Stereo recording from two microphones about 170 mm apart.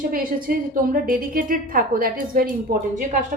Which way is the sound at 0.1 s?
55° right (ahead or behind).